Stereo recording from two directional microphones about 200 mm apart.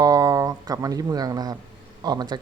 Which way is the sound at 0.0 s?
20° right (ahead or behind).